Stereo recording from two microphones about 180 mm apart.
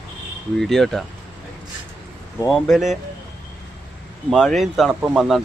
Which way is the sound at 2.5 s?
Centre (ahead or behind).